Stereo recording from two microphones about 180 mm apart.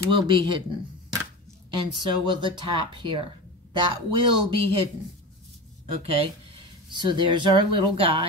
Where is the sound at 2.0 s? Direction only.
25° right (ahead or behind).